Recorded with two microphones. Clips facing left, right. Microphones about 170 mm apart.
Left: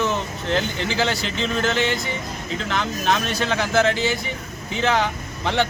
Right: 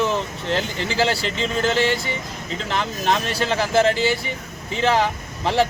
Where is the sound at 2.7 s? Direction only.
Centre (ahead or behind).